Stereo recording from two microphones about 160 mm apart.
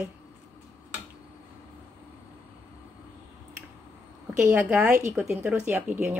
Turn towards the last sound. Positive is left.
turn(degrees=-10)  # may be behind; listen again after turning